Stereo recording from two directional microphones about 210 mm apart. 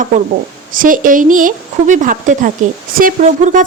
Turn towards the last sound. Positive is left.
turn(degrees=-35)  # may be behind; listen again after turning